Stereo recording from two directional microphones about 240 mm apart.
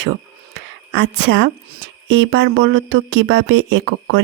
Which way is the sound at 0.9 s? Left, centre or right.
Right.